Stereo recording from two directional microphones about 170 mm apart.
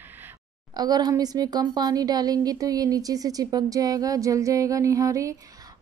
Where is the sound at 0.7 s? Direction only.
25° right (ahead or behind).